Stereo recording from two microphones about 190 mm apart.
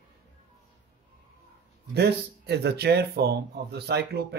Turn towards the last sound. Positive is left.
turn(degrees=-60)  # may be behind; listen again after turning